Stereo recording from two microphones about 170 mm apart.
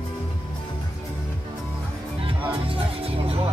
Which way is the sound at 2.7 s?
35° right (ahead or behind).